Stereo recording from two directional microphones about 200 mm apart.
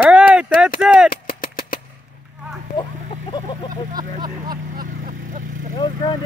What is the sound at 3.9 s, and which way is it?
Vehicle, 20° right (ahead or behind).